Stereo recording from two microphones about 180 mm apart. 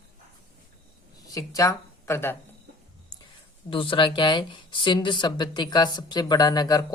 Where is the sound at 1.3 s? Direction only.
20° left (ahead or behind).